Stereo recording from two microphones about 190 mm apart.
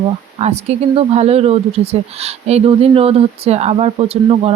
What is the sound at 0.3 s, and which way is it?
Speech, 35° right (ahead or behind).